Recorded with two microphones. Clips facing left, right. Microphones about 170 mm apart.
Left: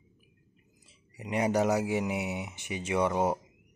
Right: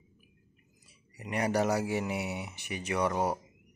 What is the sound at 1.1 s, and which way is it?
Speech, 20° left (ahead or behind).